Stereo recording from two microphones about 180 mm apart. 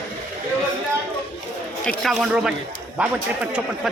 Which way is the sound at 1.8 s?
Centre (ahead or behind).